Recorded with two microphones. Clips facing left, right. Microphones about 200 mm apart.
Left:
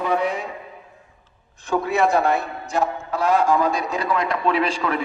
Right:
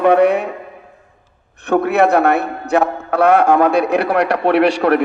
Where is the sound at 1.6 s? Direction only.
65° right (ahead or behind).